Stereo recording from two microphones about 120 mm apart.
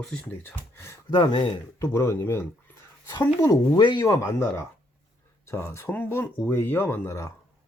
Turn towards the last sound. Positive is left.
turn(degrees=25)  # may be behind; listen again after turning